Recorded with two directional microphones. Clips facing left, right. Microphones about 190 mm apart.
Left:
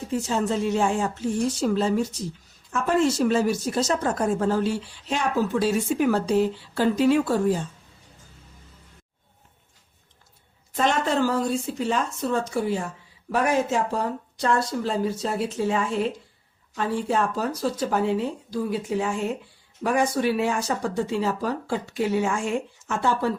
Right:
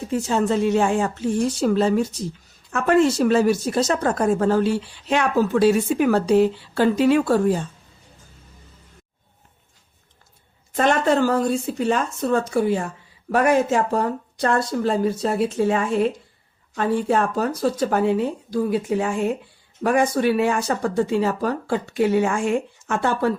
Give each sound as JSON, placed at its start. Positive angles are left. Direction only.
{"t": 0.1, "sound": "speech", "side_deg": -65}
{"t": 10.8, "sound": "speech", "side_deg": -55}